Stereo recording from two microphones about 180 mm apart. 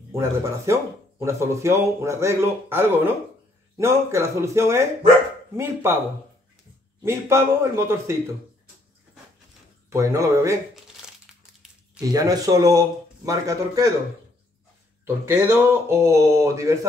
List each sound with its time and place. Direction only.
0.1 s speech: 15° right (ahead or behind)
7.0 s speech: 15° right (ahead or behind)
9.8 s speech: 15° right (ahead or behind)
12.0 s a man's voice: 20° right (ahead or behind)
15.0 s speech: 10° right (ahead or behind)